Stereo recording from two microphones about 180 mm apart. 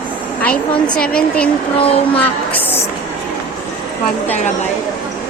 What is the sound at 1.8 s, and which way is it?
Speech, 35° left (ahead or behind).